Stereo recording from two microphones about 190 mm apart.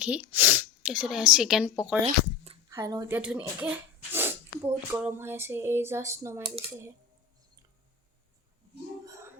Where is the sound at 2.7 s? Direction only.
20° right (ahead or behind).